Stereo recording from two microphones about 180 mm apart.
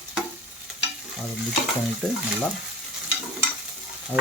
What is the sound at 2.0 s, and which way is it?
Speech, 5° left (ahead or behind).